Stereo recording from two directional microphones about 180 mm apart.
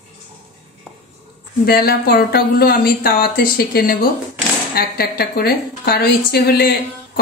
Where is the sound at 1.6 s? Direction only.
55° left (ahead or behind).